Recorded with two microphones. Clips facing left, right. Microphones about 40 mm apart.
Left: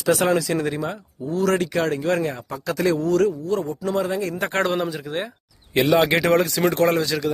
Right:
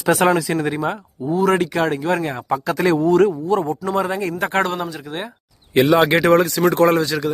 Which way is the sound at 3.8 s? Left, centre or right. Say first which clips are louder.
Right 3 dB; right.